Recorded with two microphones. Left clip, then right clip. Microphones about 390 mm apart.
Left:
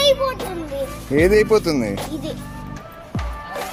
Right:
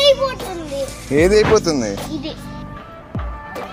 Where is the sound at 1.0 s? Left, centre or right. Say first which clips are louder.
Right 2 dB; left.